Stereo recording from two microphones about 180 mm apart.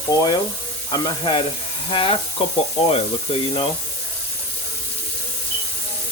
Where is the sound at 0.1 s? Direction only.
20° left (ahead or behind).